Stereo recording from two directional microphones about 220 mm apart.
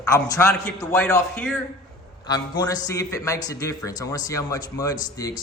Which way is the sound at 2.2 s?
15° left (ahead or behind).